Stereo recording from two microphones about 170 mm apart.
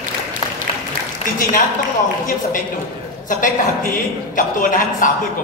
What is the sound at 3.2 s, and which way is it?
A man's voice, 50° left (ahead or behind).